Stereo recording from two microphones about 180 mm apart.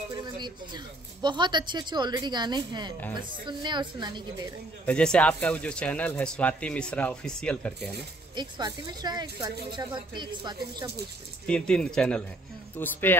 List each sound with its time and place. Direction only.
0.4 s speech: 25° right (ahead or behind)
4.8 s speech: 5° left (ahead or behind)
8.4 s speech: 20° right (ahead or behind)
11.4 s speech: 5° left (ahead or behind)